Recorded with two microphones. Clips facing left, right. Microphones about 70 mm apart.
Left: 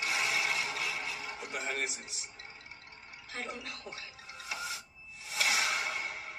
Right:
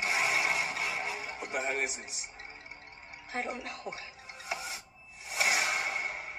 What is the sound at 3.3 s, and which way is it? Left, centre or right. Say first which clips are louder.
Speech: right 6 dB; right.